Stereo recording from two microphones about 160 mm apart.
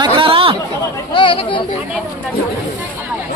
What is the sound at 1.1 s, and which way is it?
Speech, 30° left (ahead or behind).